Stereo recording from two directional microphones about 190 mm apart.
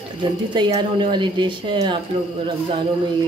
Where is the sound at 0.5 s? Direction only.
25° right (ahead or behind).